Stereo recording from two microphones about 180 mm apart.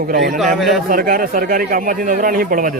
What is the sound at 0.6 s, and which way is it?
Speech, centre (ahead or behind).